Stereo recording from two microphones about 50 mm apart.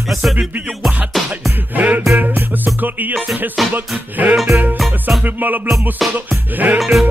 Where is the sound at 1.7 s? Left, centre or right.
Right.